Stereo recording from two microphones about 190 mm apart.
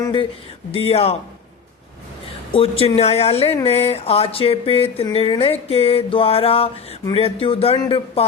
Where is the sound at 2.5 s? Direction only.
30° left (ahead or behind).